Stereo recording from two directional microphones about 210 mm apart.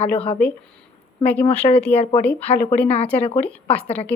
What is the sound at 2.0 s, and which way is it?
Speech, 30° left (ahead or behind).